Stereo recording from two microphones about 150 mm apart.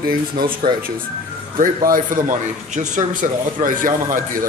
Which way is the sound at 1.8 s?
65° right (ahead or behind).